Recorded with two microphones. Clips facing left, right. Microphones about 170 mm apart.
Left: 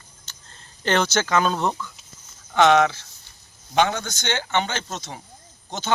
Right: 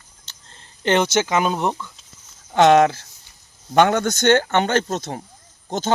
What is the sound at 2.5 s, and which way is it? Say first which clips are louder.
Speech: right 3 dB; 40° right (ahead or behind).